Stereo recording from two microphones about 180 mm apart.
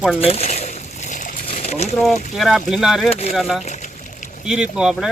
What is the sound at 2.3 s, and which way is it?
Speech, centre (ahead or behind).